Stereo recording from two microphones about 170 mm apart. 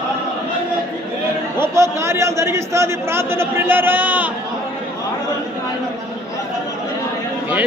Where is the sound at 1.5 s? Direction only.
15° right (ahead or behind).